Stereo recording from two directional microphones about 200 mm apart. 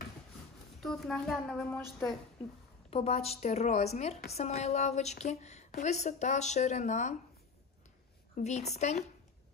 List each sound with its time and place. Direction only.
0.7 s a woman's voice: centre (ahead or behind)
2.9 s speech: 30° left (ahead or behind)
8.4 s speech: 35° left (ahead or behind)